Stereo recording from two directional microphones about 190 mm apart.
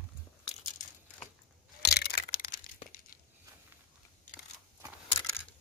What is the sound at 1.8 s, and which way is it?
Crushing, 60° left (ahead or behind).